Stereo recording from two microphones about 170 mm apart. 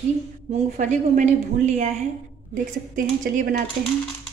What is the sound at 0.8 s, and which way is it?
A woman's voice, 45° right (ahead or behind).